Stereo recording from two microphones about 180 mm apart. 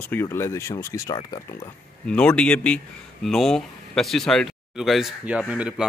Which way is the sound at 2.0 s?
5° left (ahead or behind).